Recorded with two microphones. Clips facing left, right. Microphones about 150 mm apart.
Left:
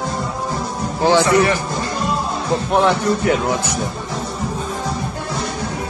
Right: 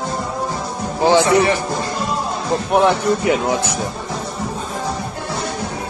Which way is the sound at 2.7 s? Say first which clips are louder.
Right 1 dB; 15° right (ahead or behind).